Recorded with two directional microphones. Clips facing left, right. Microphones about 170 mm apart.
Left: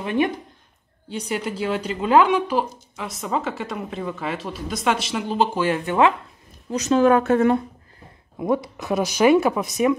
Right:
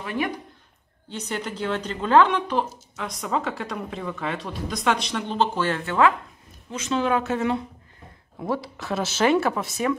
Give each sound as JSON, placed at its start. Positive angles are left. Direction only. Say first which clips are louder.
{"t": 0.0, "sound": "speech", "louder": "left 6 dB", "side_deg": 20}
{"t": 1.0, "sound": "speech", "louder": "left 4 dB", "side_deg": 10}
{"t": 6.7, "sound": "a woman's voice", "louder": "left 7 dB", "side_deg": 40}
{"t": 8.4, "sound": "speech", "louder": "left 5 dB", "side_deg": 15}